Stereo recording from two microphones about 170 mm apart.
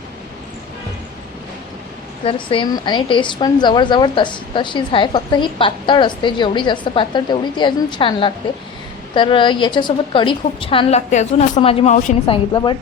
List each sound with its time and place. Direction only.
2.2 s speech: 30° left (ahead or behind)